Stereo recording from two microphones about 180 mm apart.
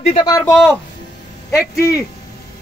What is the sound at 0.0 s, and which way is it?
Speech, 30° left (ahead or behind).